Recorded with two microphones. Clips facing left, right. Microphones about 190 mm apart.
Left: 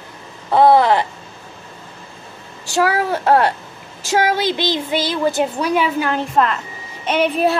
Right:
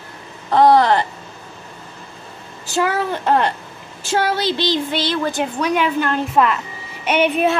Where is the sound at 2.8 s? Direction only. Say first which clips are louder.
Left 2 dB; 5° left (ahead or behind).